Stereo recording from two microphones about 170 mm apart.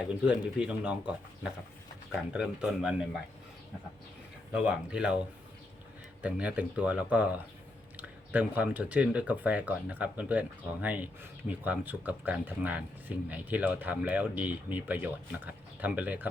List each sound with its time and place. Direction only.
0.0 s speech: 5° right (ahead or behind)
2.1 s speech: 5° right (ahead or behind)
4.5 s speech: 5° right (ahead or behind)
6.2 s speech: 10° right (ahead or behind)